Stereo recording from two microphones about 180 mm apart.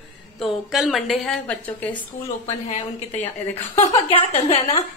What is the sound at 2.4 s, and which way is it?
A woman's voice, 40° left (ahead or behind).